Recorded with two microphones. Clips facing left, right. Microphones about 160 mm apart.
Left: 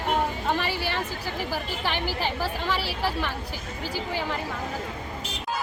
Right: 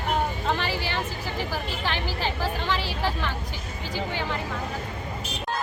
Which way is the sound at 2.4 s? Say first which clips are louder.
Even; 10° left (ahead or behind).